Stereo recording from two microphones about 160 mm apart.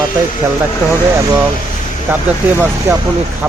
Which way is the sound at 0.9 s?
15° right (ahead or behind).